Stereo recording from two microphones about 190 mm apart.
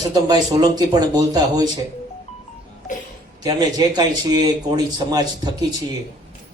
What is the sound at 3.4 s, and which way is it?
A man's voice, 20° right (ahead or behind).